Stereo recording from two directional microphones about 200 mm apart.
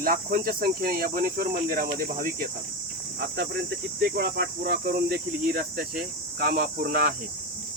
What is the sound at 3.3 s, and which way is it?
Speech, 55° right (ahead or behind).